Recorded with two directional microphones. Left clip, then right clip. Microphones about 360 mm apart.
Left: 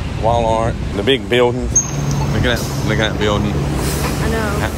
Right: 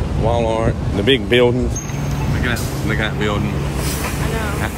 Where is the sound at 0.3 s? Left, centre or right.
Centre.